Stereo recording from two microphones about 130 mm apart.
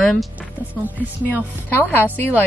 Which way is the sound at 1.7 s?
15° left (ahead or behind).